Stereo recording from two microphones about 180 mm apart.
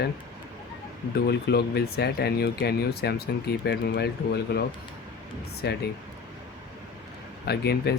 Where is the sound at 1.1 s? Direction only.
65° left (ahead or behind).